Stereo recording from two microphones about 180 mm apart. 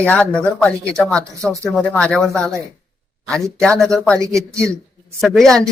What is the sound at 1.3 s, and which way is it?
Speech, 20° right (ahead or behind).